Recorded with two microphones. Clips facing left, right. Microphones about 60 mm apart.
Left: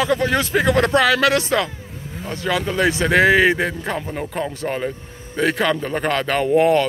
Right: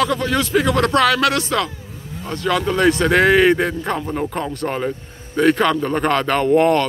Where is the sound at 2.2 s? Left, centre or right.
Centre.